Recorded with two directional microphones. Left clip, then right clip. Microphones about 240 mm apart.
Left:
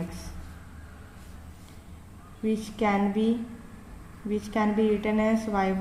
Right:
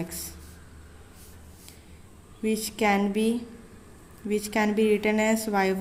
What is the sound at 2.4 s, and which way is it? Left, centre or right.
A woman's voice, right.